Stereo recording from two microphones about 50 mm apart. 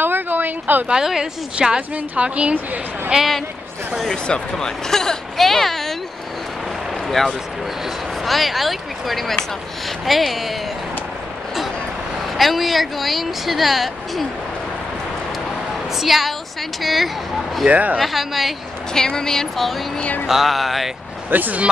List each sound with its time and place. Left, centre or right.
0.0 s a sound: right
0.8 s a woman's voice: centre
1.8 s a woman's voice: right
4.3 s speech: centre
7.1 s speech: centre
12.4 s speech: centre
16.0 s speech: centre
17.6 s speech: right
18.0 s speech: centre
18.9 s speech: centre
20.0 s a sound: left
20.2 s speech: centre
21.3 s speech: right